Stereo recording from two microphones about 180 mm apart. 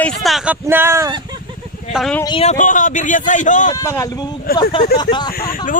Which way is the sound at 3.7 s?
15° left (ahead or behind).